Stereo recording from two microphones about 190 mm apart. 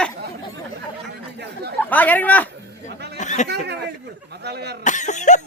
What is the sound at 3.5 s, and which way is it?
Speech, 60° right (ahead or behind).